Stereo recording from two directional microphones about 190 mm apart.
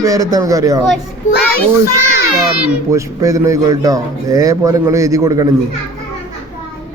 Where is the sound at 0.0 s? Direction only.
20° right (ahead or behind).